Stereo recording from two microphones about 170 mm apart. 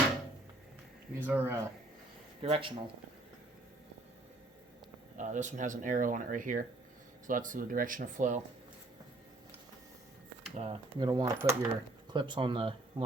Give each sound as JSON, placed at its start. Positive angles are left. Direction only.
{"t": 1.2, "sound": "speech", "side_deg": -10}
{"t": 2.4, "sound": "speech", "side_deg": -30}
{"t": 5.1, "sound": "speech", "side_deg": -45}
{"t": 10.6, "sound": "speech", "side_deg": -30}
{"t": 12.1, "sound": "speech", "side_deg": -30}